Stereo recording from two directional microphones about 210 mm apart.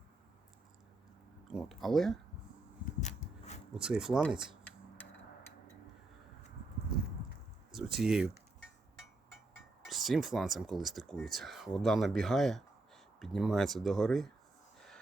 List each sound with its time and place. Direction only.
1.5 s speech: centre (ahead or behind)
3.0 s a sound: 35° left (ahead or behind)
3.8 s speech: 5° right (ahead or behind)
4.6 s a sound: 10° left (ahead or behind)
7.7 s speech: centre (ahead or behind)
9.8 s speech: centre (ahead or behind)